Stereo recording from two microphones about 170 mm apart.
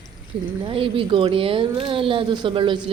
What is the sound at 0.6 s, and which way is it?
Speech, 30° right (ahead or behind).